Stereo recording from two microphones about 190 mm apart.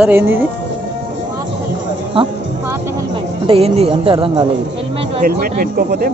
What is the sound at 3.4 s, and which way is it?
A woman's voice, 30° right (ahead or behind).